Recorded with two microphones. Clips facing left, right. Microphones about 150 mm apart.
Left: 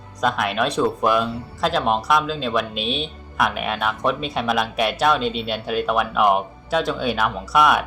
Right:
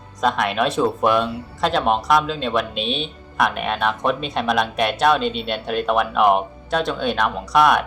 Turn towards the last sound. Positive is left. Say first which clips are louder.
# right 2 dB
turn(degrees=5)  # may be behind; listen again after turning